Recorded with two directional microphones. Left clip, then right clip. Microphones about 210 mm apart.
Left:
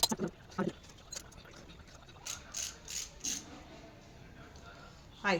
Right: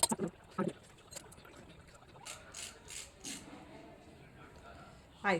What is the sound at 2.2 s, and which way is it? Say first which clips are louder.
Ratchet: left 6 dB; 30° left (ahead or behind).